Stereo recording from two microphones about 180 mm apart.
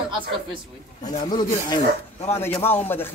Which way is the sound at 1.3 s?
25° left (ahead or behind).